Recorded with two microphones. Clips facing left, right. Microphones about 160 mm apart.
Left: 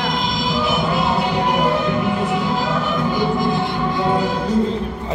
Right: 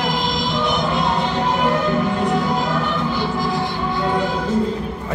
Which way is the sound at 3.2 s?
20° left (ahead or behind).